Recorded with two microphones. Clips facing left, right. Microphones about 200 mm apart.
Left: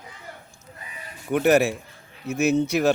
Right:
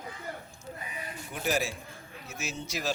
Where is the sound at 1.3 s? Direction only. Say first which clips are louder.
Left 13 dB; 65° left (ahead or behind).